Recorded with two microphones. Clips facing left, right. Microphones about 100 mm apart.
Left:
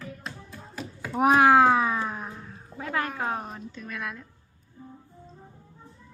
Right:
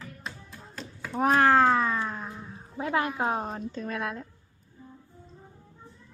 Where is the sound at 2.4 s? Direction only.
20° right (ahead or behind).